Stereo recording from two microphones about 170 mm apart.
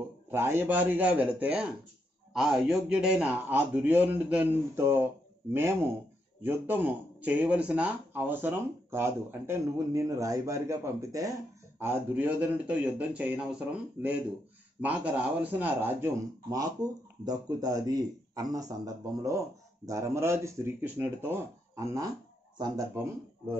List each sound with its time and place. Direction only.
0.3 s speech: 15° right (ahead or behind)
16.0 s a man's voice: 20° right (ahead or behind)